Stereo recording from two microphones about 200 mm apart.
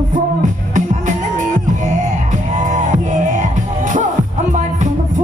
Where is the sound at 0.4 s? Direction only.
40° right (ahead or behind).